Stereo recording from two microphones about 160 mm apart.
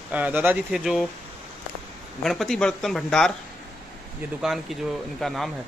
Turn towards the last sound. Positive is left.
turn(degrees=0)  # may be behind; listen again after turning